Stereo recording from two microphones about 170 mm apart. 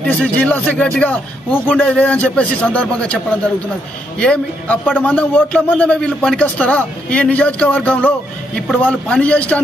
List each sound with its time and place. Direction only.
0.0 s a man's voice: 5° left (ahead or behind)